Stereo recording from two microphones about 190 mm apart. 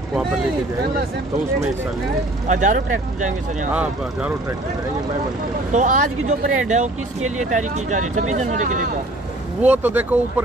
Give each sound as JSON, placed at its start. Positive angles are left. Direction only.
{"t": 2.4, "sound": "speech", "side_deg": -40}
{"t": 3.7, "sound": "speech", "side_deg": -5}
{"t": 5.7, "sound": "speech", "side_deg": -40}
{"t": 9.6, "sound": "speech", "side_deg": -10}